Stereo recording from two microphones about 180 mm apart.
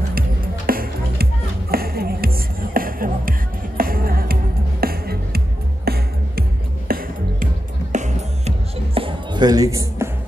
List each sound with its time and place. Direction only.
0.7 s music: 55° right (ahead or behind)
7.9 s music: 40° right (ahead or behind); by 10.0 s 20° right (ahead or behind)